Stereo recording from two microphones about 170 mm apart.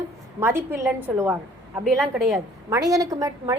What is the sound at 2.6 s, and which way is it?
Speech, 20° right (ahead or behind).